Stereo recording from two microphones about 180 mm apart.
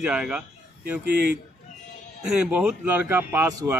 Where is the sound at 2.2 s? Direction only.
5° right (ahead or behind).